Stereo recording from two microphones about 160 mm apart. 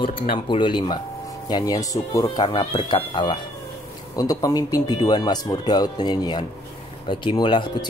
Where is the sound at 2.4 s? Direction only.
35° left (ahead or behind).